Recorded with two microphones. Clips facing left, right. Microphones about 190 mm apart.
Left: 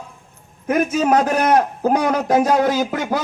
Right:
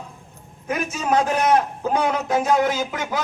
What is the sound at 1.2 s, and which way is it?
A man's voice, 50° left (ahead or behind).